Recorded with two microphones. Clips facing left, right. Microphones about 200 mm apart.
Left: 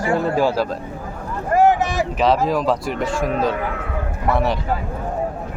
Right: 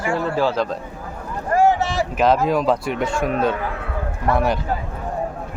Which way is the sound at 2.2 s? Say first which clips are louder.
Right 1 dB; centre (ahead or behind).